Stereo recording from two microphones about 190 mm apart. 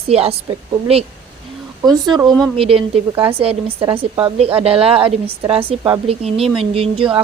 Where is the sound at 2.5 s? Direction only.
30° right (ahead or behind).